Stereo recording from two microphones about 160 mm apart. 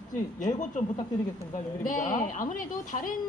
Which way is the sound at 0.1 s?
50° left (ahead or behind).